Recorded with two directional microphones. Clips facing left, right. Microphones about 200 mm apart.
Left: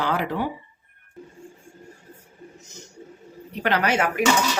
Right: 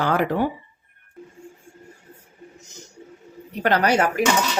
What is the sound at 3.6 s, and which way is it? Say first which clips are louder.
Speech: right 3 dB; 40° right (ahead or behind).